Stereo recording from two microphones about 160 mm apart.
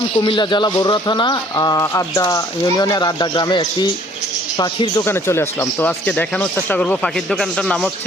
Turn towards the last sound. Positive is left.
turn(degrees=5)  # may be behind; listen again after turning